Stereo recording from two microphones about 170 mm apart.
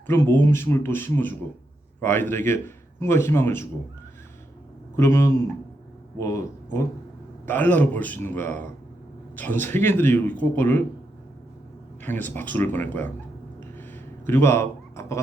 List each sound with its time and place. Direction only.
0.4 s a man's voice: 15° left (ahead or behind)
4.9 s a man's voice: 15° left (ahead or behind)
12.0 s a man's voice: 10° left (ahead or behind)
13.7 s a sound: 10° left (ahead or behind)